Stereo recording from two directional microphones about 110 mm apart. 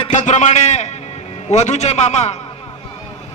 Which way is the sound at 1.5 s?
90° left.